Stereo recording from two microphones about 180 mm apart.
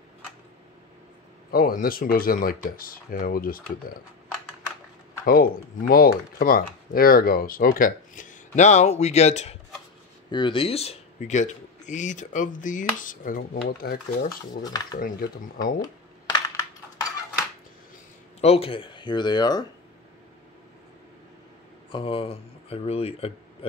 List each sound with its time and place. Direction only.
1.5 s speech: 55° left (ahead or behind)
5.2 s speech: 55° left (ahead or behind)
14.6 s speech: 20° left (ahead or behind)
15.2 s speech: 55° left (ahead or behind)
15.6 s a sound: 20° left (ahead or behind)
18.4 s speech: 35° left (ahead or behind)
21.9 s speech: 30° left (ahead or behind)